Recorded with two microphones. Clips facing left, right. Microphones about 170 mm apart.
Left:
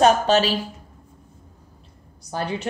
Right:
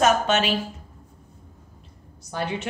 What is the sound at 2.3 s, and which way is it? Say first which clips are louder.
Speech: left 1 dB; 35° left (ahead or behind).